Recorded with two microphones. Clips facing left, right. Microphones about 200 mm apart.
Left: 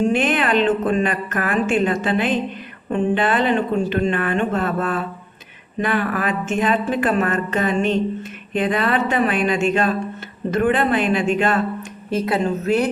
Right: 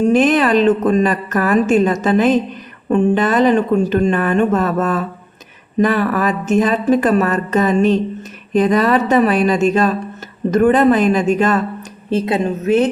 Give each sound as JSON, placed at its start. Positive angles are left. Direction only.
{"t": 0.0, "sound": "a woman's voice", "side_deg": -40}
{"t": 12.1, "sound": "a woman's voice", "side_deg": -25}